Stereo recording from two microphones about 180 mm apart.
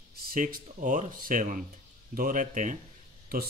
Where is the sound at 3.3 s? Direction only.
60° right (ahead or behind).